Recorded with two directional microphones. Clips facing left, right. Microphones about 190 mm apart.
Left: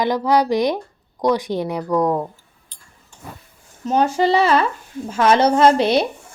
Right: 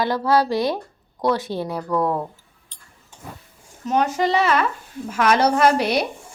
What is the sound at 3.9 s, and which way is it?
A woman's voice, 30° left (ahead or behind).